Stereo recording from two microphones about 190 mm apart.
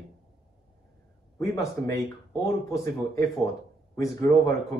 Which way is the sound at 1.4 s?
15° left (ahead or behind).